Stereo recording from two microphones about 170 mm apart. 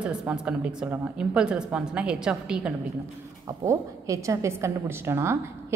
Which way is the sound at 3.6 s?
20° right (ahead or behind).